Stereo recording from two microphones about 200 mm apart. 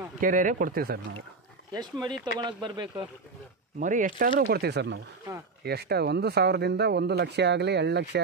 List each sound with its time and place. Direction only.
0.2 s speech: 40° right (ahead or behind)
1.7 s speech: 20° right (ahead or behind)
3.8 s speech: 40° right (ahead or behind)
4.4 s speech: 50° right (ahead or behind)